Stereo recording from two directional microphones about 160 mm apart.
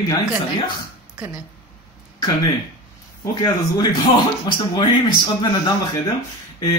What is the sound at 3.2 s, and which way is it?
Speech, 25° left (ahead or behind).